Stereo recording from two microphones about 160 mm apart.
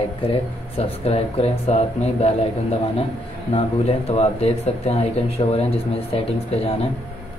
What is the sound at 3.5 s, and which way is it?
Speech, 40° left (ahead or behind).